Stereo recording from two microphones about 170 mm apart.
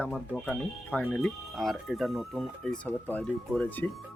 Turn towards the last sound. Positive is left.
turn(degrees=10)  # may be behind; listen again after turning